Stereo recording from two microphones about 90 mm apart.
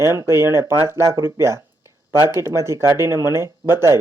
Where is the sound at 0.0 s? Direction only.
30° right (ahead or behind).